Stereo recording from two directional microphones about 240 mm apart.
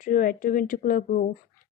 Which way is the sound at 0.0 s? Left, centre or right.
Left.